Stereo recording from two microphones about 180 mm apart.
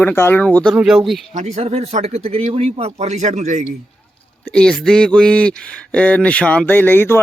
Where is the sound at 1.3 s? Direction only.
40° right (ahead or behind).